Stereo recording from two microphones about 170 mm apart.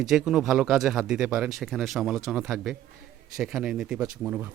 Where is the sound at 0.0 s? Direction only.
Centre (ahead or behind).